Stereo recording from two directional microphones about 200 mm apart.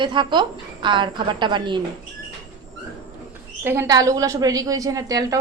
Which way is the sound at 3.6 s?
10° right (ahead or behind).